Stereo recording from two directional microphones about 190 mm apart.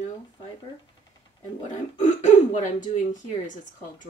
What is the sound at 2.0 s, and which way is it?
Speech, 40° left (ahead or behind).